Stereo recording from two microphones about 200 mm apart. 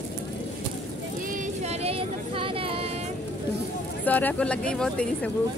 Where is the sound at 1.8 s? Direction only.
30° right (ahead or behind).